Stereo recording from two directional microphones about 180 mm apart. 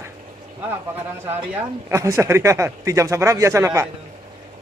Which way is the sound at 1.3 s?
15° right (ahead or behind).